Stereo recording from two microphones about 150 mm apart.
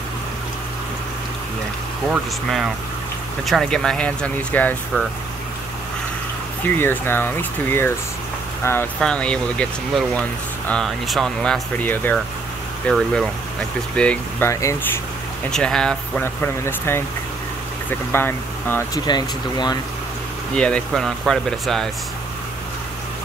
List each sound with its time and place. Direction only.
3.4 s speech: centre (ahead or behind)
6.6 s speech: 15° left (ahead or behind)
9.0 s speech: 5° left (ahead or behind)
14.5 s speech: 20° left (ahead or behind)
15.5 s speech: 5° left (ahead or behind)
16.6 s speech: 15° left (ahead or behind)
18.1 s speech: 15° left (ahead or behind)
19.0 s speech: 30° left (ahead or behind)
20.5 s speech: 5° left (ahead or behind)